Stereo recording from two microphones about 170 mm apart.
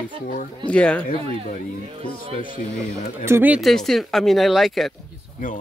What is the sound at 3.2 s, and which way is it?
Speech, 10° right (ahead or behind).